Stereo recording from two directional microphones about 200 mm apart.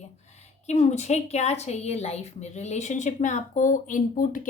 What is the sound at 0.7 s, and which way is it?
Speech, 35° left (ahead or behind).